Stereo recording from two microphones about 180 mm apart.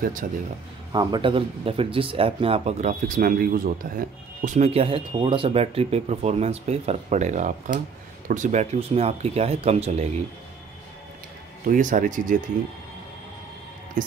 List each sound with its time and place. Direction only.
0.0 s speech: 45° right (ahead or behind)
0.9 s speech: 25° right (ahead or behind); by 4.0 s 50° right (ahead or behind)
4.5 s speech: 35° right (ahead or behind)
11.6 s speech: 45° right (ahead or behind)
14.0 s speech: 45° right (ahead or behind)